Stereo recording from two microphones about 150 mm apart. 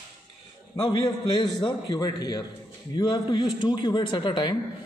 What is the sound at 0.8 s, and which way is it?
A man's voice, 30° left (ahead or behind).